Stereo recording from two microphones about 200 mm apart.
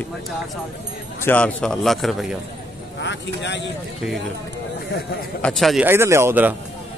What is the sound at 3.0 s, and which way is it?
Speech, 60° left (ahead or behind).